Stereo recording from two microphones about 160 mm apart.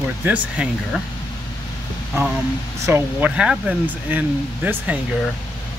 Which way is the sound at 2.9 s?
15° right (ahead or behind).